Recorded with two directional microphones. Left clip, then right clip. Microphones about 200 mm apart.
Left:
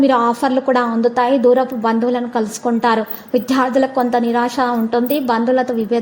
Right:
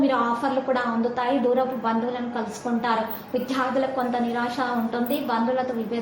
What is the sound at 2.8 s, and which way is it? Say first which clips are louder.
A woman's voice: left 7 dB; 45° left (ahead or behind).